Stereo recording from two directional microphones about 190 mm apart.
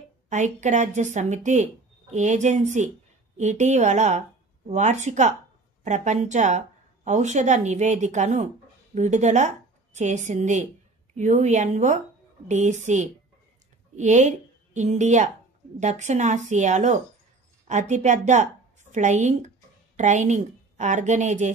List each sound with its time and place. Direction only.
0.3 s a woman's voice: 40° right (ahead or behind)